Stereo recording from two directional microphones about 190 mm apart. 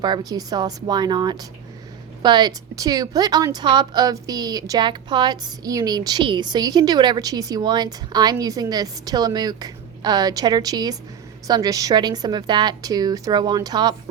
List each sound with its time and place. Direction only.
0.0 s a woman's voice: 20° right (ahead or behind)